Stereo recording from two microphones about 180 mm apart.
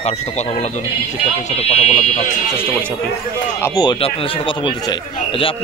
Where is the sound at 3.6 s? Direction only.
20° left (ahead or behind).